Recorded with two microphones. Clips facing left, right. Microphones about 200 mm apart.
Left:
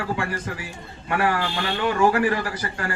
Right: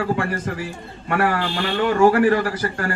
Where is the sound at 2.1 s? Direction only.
40° right (ahead or behind).